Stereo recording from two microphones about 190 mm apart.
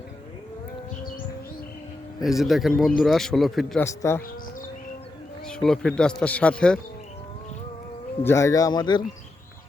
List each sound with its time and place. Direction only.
2.2 s speech: centre (ahead or behind)
3.8 s speech: 15° left (ahead or behind)
5.5 s speech: 5° left (ahead or behind)
8.2 s speech: 15° left (ahead or behind)